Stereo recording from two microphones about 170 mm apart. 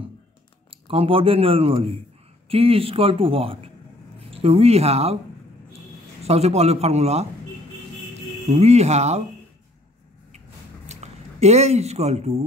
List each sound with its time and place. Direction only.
0.7 s a man's voice: 35° right (ahead or behind)
6.2 s a man's voice: 40° right (ahead or behind)
8.5 s a man's voice: 40° right (ahead or behind)
10.9 s speech: 40° right (ahead or behind)